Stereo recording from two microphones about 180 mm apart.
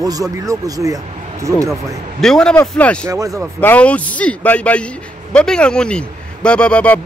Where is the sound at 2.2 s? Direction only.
5° left (ahead or behind).